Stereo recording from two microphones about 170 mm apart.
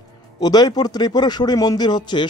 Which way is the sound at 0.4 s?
25° left (ahead or behind).